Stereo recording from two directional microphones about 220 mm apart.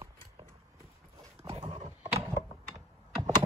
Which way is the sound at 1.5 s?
20° right (ahead or behind).